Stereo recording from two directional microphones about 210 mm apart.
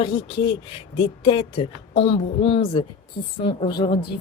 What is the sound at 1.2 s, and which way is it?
A woman's voice, 25° left (ahead or behind).